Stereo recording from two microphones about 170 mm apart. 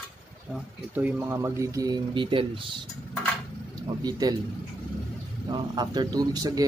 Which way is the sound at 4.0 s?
25° right (ahead or behind).